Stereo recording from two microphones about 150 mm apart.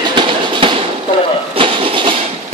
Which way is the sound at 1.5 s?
35° right (ahead or behind).